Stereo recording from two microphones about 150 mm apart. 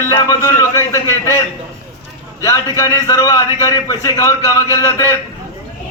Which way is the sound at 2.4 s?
25° left (ahead or behind).